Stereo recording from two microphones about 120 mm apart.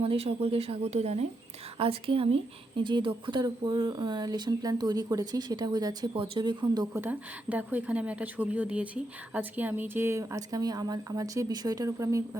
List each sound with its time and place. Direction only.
0.0 s speech: 50° right (ahead or behind)
1.8 s speech: 50° right (ahead or behind); by 6.2 s 35° right (ahead or behind)
6.2 s speech: 45° right (ahead or behind)
6.9 s a woman's voice: 15° right (ahead or behind)